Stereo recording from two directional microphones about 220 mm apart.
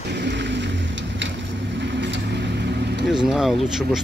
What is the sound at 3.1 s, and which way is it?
Speech, centre (ahead or behind).